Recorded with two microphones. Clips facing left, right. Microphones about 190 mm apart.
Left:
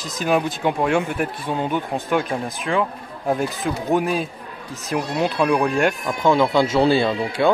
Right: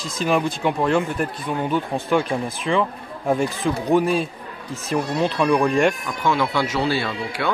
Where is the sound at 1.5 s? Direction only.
20° left (ahead or behind).